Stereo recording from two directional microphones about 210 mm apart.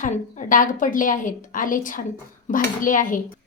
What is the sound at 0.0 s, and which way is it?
A woman's voice, 35° left (ahead or behind).